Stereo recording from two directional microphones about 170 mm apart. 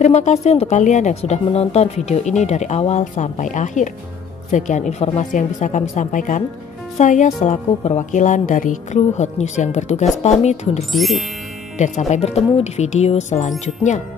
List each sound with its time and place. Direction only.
0.0 s a woman's voice: 45° left (ahead or behind)
10.9 s speech: centre (ahead or behind)
11.8 s a woman's voice: 45° left (ahead or behind)